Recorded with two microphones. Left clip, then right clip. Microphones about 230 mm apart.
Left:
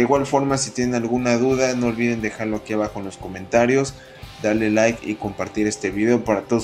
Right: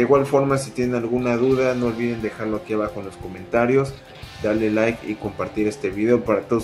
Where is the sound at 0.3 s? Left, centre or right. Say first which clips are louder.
Right 1 dB; left.